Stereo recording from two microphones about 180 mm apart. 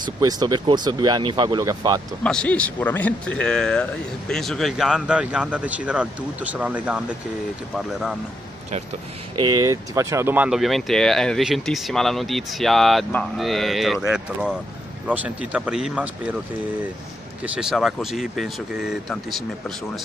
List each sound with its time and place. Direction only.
0.0 s speech: 20° right (ahead or behind)
2.2 s speech: 5° left (ahead or behind)
9.4 s speech: 20° right (ahead or behind)
17.4 s speech: 5° right (ahead or behind)